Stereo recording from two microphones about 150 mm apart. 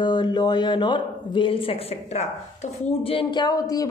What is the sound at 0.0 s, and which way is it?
A woman's voice, 30° left (ahead or behind).